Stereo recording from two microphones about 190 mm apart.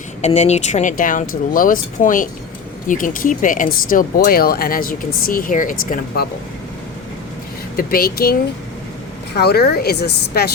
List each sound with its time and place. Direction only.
0.2 s speech: 35° left (ahead or behind)
7.8 s speech: 50° left (ahead or behind)